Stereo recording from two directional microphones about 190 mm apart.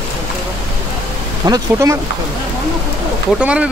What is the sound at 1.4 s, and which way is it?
Speech, 20° right (ahead or behind).